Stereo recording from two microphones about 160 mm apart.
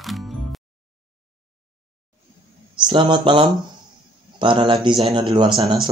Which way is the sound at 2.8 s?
30° right (ahead or behind).